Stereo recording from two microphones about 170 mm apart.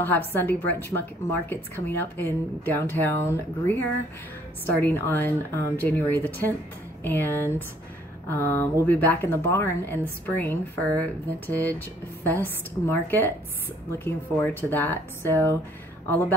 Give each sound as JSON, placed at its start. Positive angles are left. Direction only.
{"t": 0.0, "sound": "a woman's voice", "side_deg": 10}